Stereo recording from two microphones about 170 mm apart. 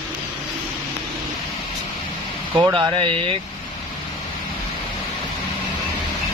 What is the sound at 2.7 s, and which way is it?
Speech, 30° right (ahead or behind).